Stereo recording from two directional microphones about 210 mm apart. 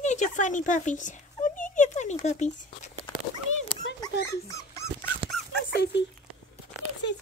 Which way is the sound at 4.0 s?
15° left (ahead or behind).